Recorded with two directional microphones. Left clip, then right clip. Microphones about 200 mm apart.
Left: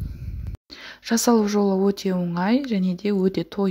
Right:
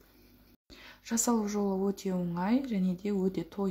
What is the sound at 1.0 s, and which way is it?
Speech, 35° left (ahead or behind).